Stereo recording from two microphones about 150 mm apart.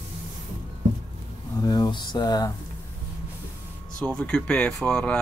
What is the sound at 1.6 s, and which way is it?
Speech, 25° left (ahead or behind).